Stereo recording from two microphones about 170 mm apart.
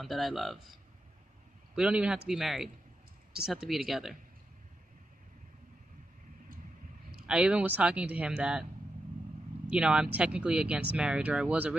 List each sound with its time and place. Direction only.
0.0 s speech: centre (ahead or behind)
1.8 s speech: 5° right (ahead or behind)
7.2 s speech: 5° right (ahead or behind)
9.7 s speech: 5° right (ahead or behind)